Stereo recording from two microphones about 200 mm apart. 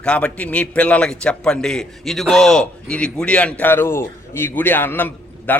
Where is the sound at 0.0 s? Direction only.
5° left (ahead or behind).